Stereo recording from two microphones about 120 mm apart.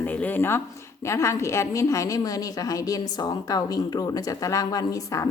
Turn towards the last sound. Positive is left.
turn(degrees=30)  # may be behind; listen again after turning